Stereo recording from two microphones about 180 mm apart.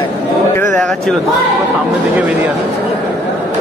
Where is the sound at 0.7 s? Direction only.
5° left (ahead or behind).